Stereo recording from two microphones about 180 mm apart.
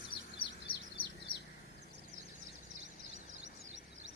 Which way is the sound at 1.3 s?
55° left (ahead or behind).